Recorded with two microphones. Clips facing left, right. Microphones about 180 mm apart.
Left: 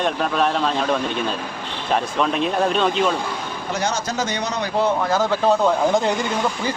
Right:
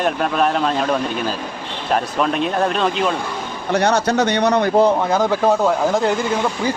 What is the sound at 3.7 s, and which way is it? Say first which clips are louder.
Speech: right 8 dB; 65° right (ahead or behind).